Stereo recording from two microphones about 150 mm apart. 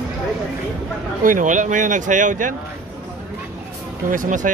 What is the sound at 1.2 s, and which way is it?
Speech, 60° right (ahead or behind).